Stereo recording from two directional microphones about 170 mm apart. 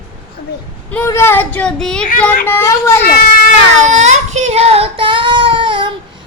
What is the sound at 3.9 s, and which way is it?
Child singing, 45° right (ahead or behind).